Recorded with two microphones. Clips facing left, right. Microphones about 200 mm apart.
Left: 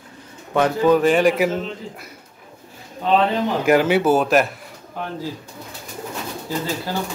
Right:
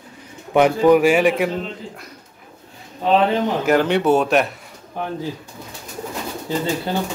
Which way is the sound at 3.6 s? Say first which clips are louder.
Left 1 dB; 5° left (ahead or behind).